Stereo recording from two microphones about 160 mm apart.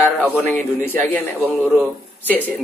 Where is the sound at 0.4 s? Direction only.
10° left (ahead or behind).